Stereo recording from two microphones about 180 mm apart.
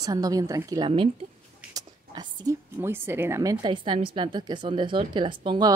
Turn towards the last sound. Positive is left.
turn(degrees=-25)  # may be behind; listen again after turning